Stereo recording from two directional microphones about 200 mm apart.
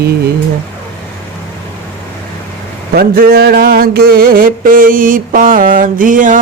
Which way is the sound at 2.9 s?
50° right (ahead or behind).